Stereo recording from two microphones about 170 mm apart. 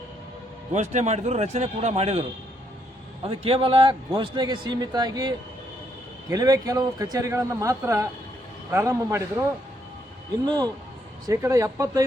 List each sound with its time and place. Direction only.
0.7 s a man's voice: 45° right (ahead or behind)
3.2 s a man's voice: 35° right (ahead or behind)
6.3 s a man's voice: 20° right (ahead or behind)
10.4 s a man's voice: 25° right (ahead or behind)